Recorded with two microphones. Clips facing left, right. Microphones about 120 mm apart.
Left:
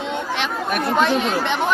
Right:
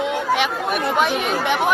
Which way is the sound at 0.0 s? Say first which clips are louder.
Right 4 dB; 10° right (ahead or behind).